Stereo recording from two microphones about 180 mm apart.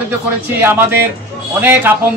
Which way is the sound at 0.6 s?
10° right (ahead or behind).